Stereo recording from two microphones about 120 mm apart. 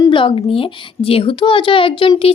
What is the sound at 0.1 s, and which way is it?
A woman's voice, 45° left (ahead or behind).